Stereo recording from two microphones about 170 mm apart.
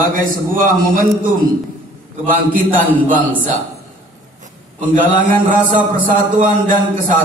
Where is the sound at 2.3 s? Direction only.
50° right (ahead or behind).